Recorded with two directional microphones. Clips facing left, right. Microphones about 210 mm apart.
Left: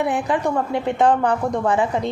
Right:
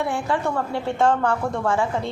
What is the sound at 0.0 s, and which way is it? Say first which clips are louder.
A woman's voice: left 3 dB; 20° left (ahead or behind).